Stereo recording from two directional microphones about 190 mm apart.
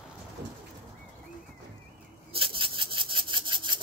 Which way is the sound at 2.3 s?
30° right (ahead or behind).